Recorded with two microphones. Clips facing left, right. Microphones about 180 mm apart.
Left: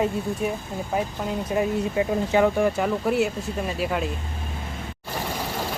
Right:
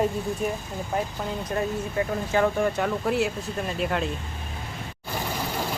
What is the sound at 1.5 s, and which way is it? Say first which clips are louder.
Speech: left 4 dB; 15° left (ahead or behind).